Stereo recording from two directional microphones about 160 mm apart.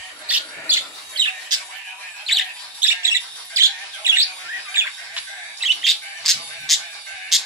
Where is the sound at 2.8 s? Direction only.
15° right (ahead or behind).